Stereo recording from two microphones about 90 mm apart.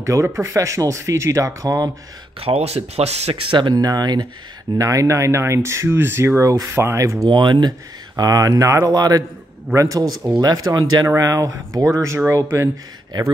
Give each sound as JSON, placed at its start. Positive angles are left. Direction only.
{"t": 0.0, "sound": "speech", "side_deg": -35}
{"t": 2.5, "sound": "speech", "side_deg": -70}
{"t": 3.7, "sound": "speech", "side_deg": -45}
{"t": 4.7, "sound": "speech", "side_deg": -40}
{"t": 7.2, "sound": "speech", "side_deg": -60}
{"t": 8.2, "sound": "speech", "side_deg": -45}
{"t": 11.1, "sound": "speech", "side_deg": -40}